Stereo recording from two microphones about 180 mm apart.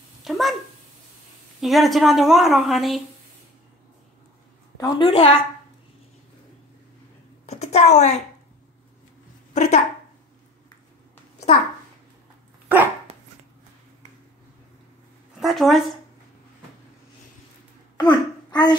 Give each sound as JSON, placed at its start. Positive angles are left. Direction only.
{"t": 0.2, "sound": "cat", "side_deg": 0}
{"t": 1.6, "sound": "a woman's voice", "side_deg": 0}
{"t": 4.7, "sound": "a woman's voice", "side_deg": 25}
{"t": 7.4, "sound": "a woman's voice", "side_deg": 35}
{"t": 9.5, "sound": "speech", "side_deg": 40}
{"t": 12.6, "sound": "dog", "side_deg": -10}
{"t": 15.4, "sound": "a woman's voice", "side_deg": 0}
{"t": 17.9, "sound": "a child's voice", "side_deg": 25}